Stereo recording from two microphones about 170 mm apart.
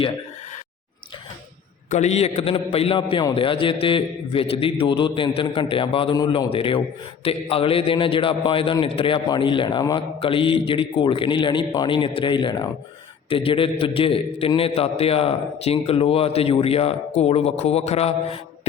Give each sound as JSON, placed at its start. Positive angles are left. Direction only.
{"t": 1.9, "sound": "a man's voice", "side_deg": 40}